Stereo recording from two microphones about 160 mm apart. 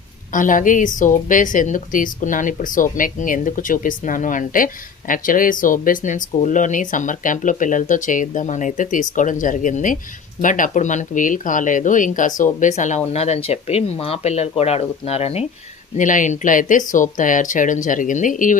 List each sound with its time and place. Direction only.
0.3 s a woman's voice: 55° left (ahead or behind)
16.0 s speech: 50° left (ahead or behind)